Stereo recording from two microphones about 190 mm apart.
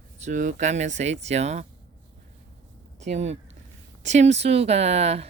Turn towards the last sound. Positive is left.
turn(degrees=-35)  # may be behind; listen again after turning